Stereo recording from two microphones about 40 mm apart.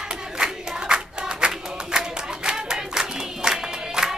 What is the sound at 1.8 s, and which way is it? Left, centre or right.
Singing, centre.